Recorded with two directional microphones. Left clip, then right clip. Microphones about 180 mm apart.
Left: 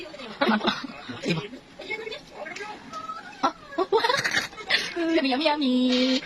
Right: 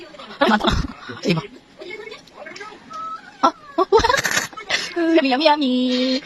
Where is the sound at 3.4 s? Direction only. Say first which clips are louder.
Right 8 dB; 30° right (ahead or behind).